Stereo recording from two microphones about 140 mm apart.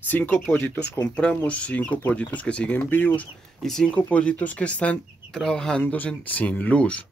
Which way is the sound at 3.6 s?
5° left (ahead or behind).